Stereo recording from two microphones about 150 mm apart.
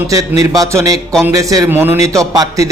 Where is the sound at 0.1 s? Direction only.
20° right (ahead or behind).